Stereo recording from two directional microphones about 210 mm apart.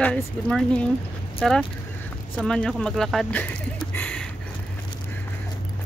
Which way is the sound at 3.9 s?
5° left (ahead or behind).